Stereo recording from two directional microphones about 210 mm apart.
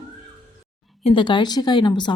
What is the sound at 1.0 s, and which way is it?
A woman's voice, 25° left (ahead or behind).